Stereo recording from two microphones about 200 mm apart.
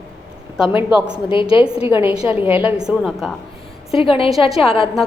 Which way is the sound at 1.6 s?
5° right (ahead or behind).